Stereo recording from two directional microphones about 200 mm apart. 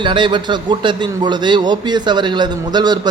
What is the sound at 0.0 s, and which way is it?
A man's voice, 25° right (ahead or behind).